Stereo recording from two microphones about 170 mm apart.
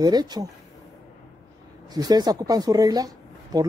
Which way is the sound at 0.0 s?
25° right (ahead or behind).